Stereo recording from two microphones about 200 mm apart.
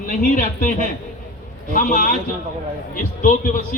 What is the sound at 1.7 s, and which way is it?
A man's voice, 40° left (ahead or behind).